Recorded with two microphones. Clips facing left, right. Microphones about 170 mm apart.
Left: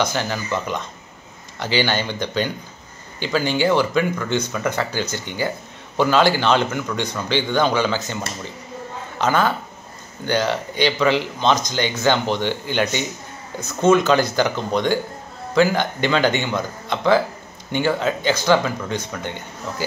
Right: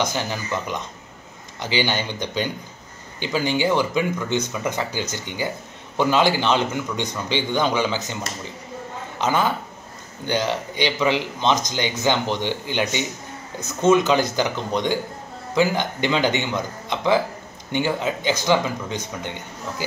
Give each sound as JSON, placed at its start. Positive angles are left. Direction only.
{"t": 0.0, "sound": "speech", "side_deg": -15}
{"t": 9.2, "sound": "speech", "side_deg": -15}